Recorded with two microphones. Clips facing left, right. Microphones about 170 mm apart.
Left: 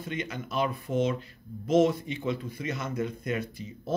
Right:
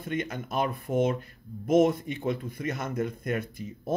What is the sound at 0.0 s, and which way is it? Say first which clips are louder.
Speech: right 3 dB; 50° right (ahead or behind).